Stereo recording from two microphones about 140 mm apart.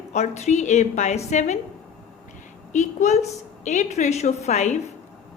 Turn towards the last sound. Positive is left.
turn(degrees=55)  # may be behind; listen again after turning